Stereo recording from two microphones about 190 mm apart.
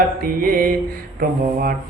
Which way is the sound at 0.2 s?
50° right (ahead or behind).